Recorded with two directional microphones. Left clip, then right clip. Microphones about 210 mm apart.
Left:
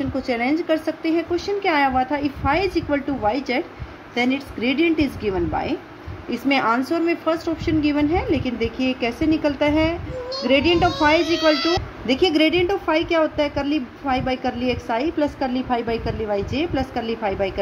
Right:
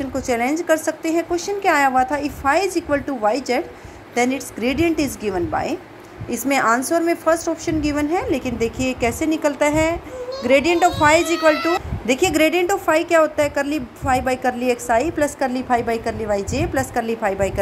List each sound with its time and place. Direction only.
0.3 s a woman's voice: 15° right (ahead or behind)